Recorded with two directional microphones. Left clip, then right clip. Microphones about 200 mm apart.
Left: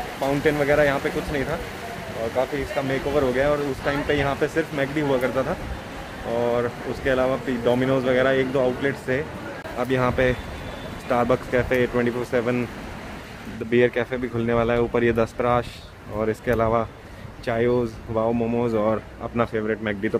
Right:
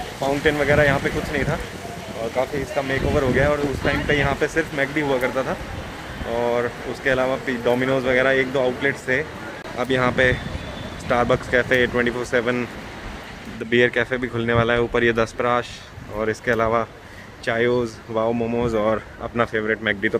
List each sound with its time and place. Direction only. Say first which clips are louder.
0.3 s speech: right 2 dB; 5° right (ahead or behind)
2.4 s speech: right 2 dB; 10° right (ahead or behind)
13.7 s speech: right 2 dB; centre (ahead or behind)